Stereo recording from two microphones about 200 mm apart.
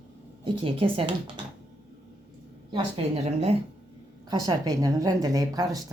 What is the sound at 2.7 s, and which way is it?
Speech, 30° right (ahead or behind).